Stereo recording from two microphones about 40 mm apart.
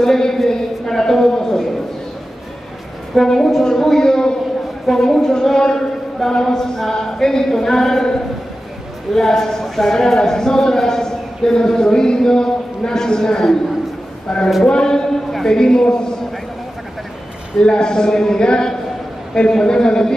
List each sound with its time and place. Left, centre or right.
0.0 s a sound: centre
3.2 s speech: centre
4.8 s a woman's voice: centre
17.6 s a man's voice: left